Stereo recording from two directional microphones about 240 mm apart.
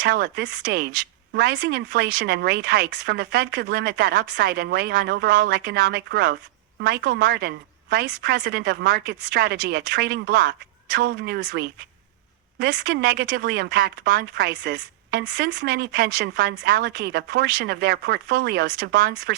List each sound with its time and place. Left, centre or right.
0.0 s speech: right